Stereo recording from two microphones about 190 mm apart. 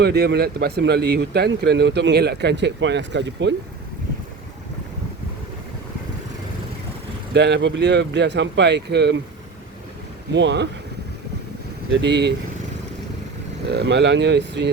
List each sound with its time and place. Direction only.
0.0 s a man's voice: 60° right (ahead or behind)
7.3 s a man's voice: 65° right (ahead or behind)
10.3 s speech: 65° right (ahead or behind)
11.9 s a man's voice: 65° right (ahead or behind)
13.7 s a man's voice: 60° right (ahead or behind)